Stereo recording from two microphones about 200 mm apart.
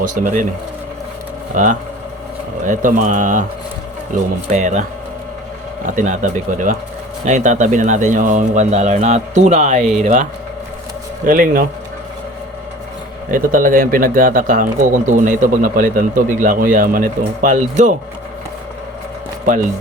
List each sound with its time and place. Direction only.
0.0 s speech: 40° right (ahead or behind)
1.5 s speech: 40° right (ahead or behind)
11.3 s speech: 45° right (ahead or behind)
13.3 s speech: 45° right (ahead or behind)